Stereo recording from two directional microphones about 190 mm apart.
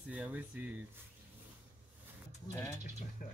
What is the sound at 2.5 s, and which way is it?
Speech, 15° left (ahead or behind).